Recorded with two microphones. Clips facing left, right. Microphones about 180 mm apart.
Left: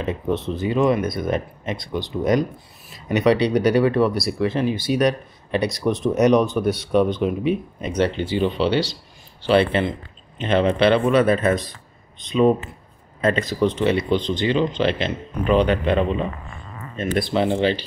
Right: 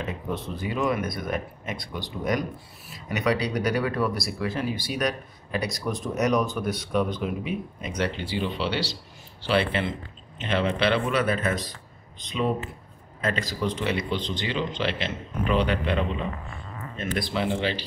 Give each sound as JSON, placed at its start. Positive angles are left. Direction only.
{"t": 0.0, "sound": "speech", "side_deg": 25}
{"t": 10.4, "sound": "speech", "side_deg": 40}
{"t": 13.2, "sound": "speech", "side_deg": 25}
{"t": 14.1, "sound": "a man's voice", "side_deg": 50}
{"t": 17.2, "sound": "speech", "side_deg": 25}